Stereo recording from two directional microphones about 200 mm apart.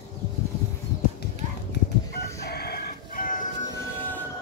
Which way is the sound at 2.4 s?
50° left (ahead or behind).